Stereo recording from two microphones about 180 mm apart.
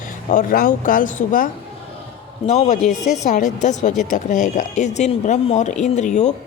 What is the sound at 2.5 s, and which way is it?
A woman's voice, 40° left (ahead or behind).